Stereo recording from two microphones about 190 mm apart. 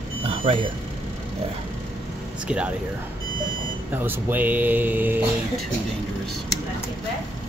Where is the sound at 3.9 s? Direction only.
10° right (ahead or behind).